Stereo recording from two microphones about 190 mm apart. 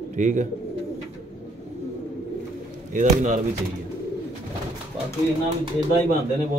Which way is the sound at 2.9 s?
45° right (ahead or behind).